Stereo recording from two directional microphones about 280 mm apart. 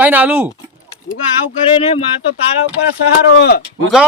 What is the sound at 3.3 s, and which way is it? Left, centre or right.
Speech, left.